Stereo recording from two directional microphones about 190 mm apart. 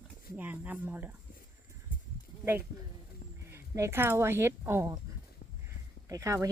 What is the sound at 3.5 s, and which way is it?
Speech, 15° right (ahead or behind).